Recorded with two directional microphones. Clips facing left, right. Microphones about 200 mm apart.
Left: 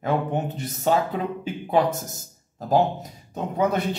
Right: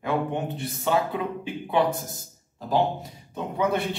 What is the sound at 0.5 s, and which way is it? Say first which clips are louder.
A man's voice: left 3 dB; 40° left (ahead or behind).